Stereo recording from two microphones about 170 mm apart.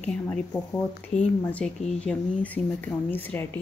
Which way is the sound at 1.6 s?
Centre (ahead or behind).